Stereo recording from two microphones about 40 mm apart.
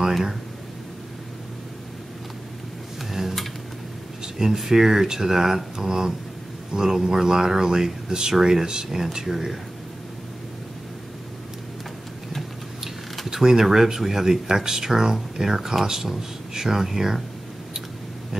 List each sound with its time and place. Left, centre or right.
3.1 s tick-tock: centre
4.4 s speech: centre
13.3 s speech: centre